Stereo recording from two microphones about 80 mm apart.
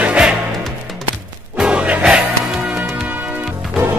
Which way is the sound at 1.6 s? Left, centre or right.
Centre.